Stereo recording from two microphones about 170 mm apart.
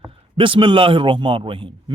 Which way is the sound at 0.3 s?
30° right (ahead or behind).